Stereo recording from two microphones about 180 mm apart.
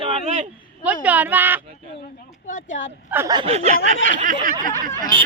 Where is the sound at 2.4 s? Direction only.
45° left (ahead or behind).